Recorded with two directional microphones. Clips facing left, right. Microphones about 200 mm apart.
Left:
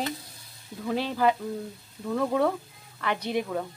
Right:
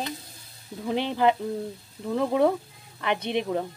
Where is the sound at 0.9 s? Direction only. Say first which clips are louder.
Right 2 dB; 20° right (ahead or behind).